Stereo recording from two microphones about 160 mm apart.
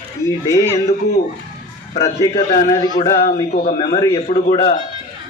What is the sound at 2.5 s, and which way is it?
A man's voice, 45° left (ahead or behind).